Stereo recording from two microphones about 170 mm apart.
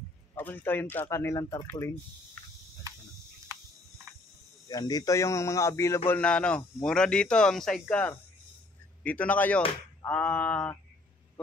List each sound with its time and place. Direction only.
0.3 s a man's voice: 10° left (ahead or behind)
4.6 s a man's voice: 25° left (ahead or behind); by 10.8 s 5° left (ahead or behind)